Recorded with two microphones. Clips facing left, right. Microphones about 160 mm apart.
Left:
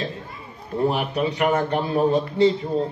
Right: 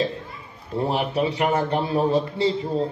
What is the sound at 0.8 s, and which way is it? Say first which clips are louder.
A man's voice: left 1 dB; 25° right (ahead or behind).